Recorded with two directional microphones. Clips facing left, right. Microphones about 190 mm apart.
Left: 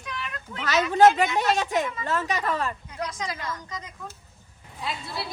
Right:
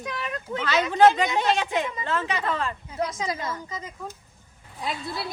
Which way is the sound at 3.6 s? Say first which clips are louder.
Right 3 dB; 10° right (ahead or behind).